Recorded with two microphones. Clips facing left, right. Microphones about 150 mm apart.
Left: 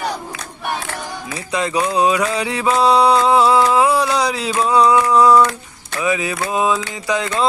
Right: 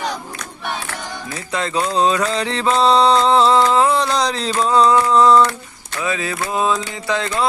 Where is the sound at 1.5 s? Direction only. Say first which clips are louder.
Left 2 dB; 15° left (ahead or behind).